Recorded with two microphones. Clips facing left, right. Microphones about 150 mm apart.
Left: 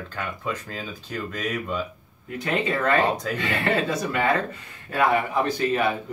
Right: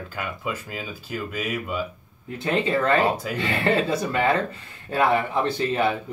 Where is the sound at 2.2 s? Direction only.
30° right (ahead or behind).